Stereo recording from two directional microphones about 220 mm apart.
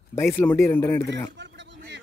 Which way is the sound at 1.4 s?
55° right (ahead or behind).